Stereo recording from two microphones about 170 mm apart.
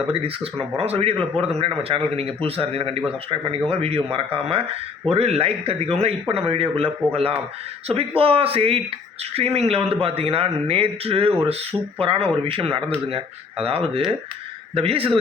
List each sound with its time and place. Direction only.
0.1 s speech: 35° right (ahead or behind)